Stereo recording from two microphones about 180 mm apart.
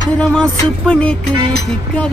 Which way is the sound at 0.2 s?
5° left (ahead or behind).